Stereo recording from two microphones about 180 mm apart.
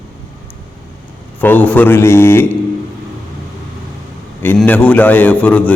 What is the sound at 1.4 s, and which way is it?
A man's voice, 10° left (ahead or behind).